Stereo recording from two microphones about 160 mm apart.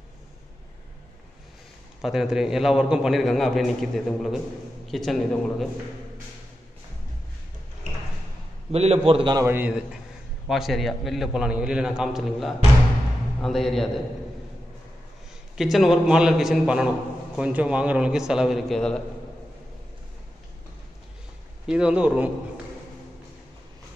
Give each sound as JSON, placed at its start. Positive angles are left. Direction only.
{"t": 2.0, "sound": "a man's voice", "side_deg": 0}
{"t": 8.7, "sound": "a man's voice", "side_deg": -40}
{"t": 9.4, "sound": "a man's voice", "side_deg": -10}
{"t": 15.5, "sound": "a man's voice", "side_deg": 0}
{"t": 21.6, "sound": "a man's voice", "side_deg": -5}